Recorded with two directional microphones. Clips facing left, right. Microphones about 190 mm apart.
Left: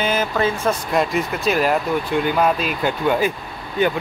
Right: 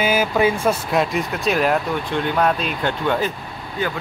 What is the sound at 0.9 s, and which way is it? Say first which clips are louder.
Speech: even; centre (ahead or behind).